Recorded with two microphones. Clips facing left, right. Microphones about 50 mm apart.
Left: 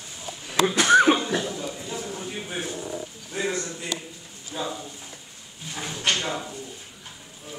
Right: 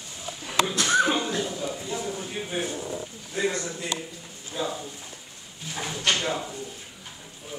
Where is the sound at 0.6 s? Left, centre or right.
Left.